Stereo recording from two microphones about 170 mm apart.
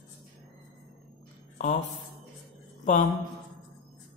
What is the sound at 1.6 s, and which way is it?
Speech, 45° left (ahead or behind).